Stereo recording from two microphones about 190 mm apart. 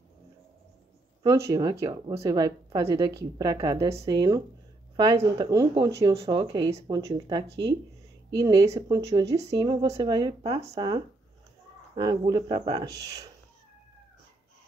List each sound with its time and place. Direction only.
1.2 s speech: 15° right (ahead or behind)